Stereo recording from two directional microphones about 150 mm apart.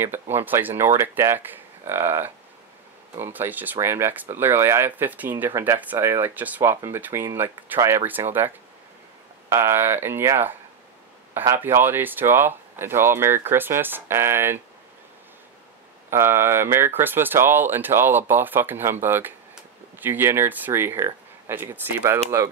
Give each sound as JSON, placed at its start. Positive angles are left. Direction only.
{"t": 0.0, "sound": "speech", "side_deg": -15}
{"t": 16.1, "sound": "speech", "side_deg": -15}